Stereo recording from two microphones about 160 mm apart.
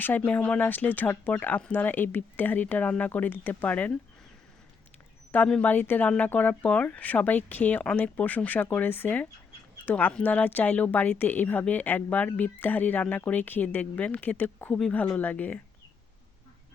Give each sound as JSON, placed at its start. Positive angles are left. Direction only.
{"t": 0.3, "sound": "a woman's voice", "side_deg": 5}
{"t": 5.3, "sound": "a woman's voice", "side_deg": 10}